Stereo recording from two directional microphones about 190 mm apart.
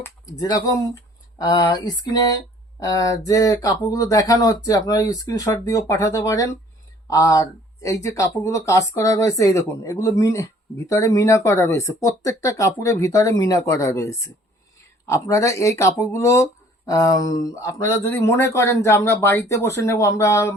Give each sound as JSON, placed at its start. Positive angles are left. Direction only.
{"t": 0.0, "sound": "speech", "side_deg": 20}
{"t": 1.4, "sound": "a sound", "side_deg": 20}
{"t": 2.8, "sound": "speech", "side_deg": 20}